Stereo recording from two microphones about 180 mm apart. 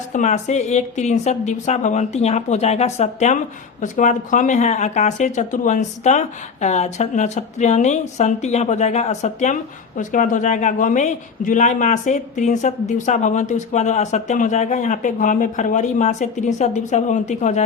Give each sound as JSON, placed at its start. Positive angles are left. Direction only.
{"t": 0.1, "sound": "a man's voice", "side_deg": 45}